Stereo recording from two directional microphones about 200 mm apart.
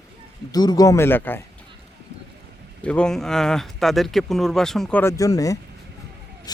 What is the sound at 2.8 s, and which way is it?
Speech, 5° left (ahead or behind).